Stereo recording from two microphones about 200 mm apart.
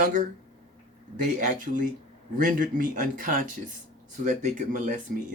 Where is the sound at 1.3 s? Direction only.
40° right (ahead or behind).